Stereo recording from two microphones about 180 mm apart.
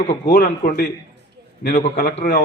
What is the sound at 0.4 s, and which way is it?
Speech, 50° left (ahead or behind).